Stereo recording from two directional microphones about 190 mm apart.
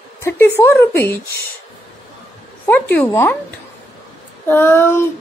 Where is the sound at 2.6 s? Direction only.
10° left (ahead or behind).